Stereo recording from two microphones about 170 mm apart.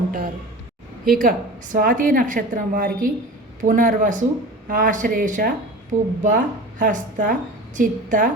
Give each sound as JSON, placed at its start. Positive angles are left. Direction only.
{"t": 1.0, "sound": "speech", "side_deg": -55}